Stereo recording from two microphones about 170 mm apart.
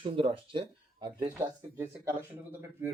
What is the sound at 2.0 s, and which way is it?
Speech, 10° right (ahead or behind).